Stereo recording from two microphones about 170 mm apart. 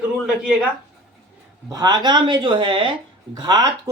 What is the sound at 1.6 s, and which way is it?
Speech, 25° right (ahead or behind).